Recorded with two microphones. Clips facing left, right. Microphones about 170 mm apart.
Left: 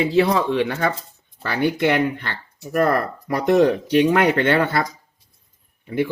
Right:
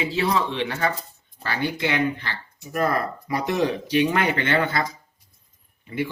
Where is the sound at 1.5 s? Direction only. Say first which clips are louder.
Left 6 dB; 60° left (ahead or behind).